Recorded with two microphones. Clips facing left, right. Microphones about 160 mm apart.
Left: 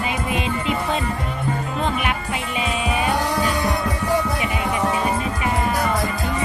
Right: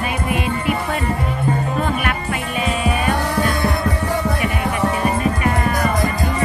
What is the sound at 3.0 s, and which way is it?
Music, 10° left (ahead or behind).